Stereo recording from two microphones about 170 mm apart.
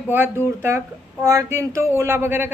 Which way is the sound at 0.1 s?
10° right (ahead or behind).